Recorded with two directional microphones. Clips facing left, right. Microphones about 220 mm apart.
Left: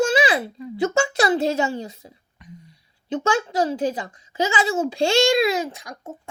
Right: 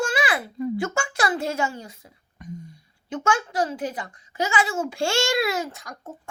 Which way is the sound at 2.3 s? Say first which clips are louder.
Right 7 dB; 45° right (ahead or behind).